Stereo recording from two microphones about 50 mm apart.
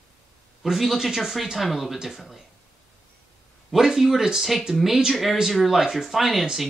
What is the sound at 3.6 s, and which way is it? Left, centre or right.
Speech, centre.